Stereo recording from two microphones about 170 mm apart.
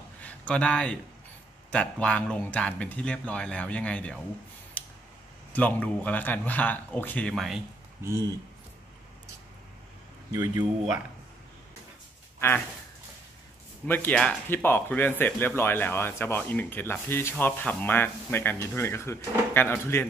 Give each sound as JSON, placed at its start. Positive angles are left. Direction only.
{"t": 0.2, "sound": "speech", "side_deg": 10}
{"t": 5.5, "sound": "speech", "side_deg": 10}
{"t": 8.0, "sound": "speech", "side_deg": -15}
{"t": 10.3, "sound": "speech", "side_deg": -20}
{"t": 12.4, "sound": "speech", "side_deg": 15}
{"t": 13.8, "sound": "speech", "side_deg": 10}